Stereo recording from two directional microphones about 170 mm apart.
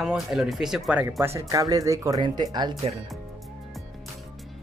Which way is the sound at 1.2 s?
20° right (ahead or behind).